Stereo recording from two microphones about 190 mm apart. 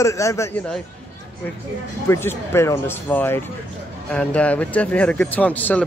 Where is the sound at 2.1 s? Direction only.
15° left (ahead or behind).